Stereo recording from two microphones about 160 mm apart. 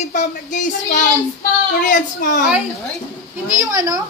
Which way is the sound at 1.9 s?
55° left (ahead or behind).